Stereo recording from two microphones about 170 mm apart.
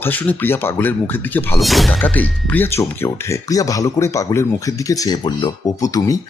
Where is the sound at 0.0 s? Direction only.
10° left (ahead or behind).